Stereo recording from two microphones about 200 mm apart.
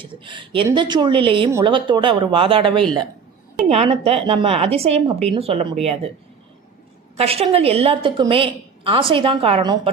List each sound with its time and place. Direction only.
0.0 s a woman's voice: 25° right (ahead or behind)
7.2 s a woman's voice: 30° right (ahead or behind)